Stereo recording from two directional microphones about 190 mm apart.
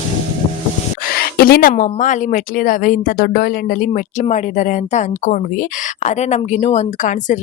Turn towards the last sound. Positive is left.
turn(degrees=40)  # may be behind; listen again after turning